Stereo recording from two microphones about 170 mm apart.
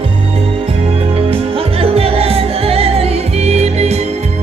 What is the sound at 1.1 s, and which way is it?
Music, 35° right (ahead or behind).